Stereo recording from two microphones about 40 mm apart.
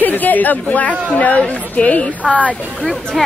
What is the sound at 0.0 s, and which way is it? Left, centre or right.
A woman's voice, left.